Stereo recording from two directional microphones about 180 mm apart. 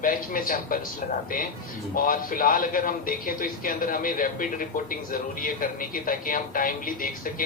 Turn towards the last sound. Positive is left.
turn(degrees=50)  # may be behind; listen again after turning